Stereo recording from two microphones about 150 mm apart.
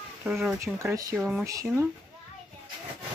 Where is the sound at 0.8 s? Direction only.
20° right (ahead or behind).